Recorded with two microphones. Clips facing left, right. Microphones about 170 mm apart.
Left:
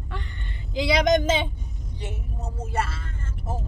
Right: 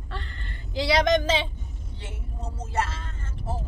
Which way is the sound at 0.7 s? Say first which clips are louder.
Left 1 dB; 15° left (ahead or behind).